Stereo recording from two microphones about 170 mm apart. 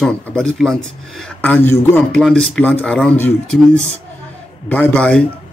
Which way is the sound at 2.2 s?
Centre (ahead or behind).